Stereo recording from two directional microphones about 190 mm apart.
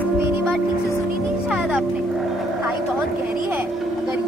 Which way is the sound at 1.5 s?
5° right (ahead or behind).